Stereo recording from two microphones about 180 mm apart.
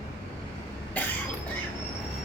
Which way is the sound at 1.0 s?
10° left (ahead or behind).